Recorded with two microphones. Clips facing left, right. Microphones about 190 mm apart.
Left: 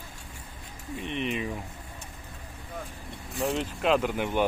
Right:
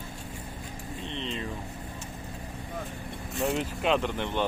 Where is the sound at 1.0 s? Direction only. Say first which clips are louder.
Left 5 dB; 15° left (ahead or behind).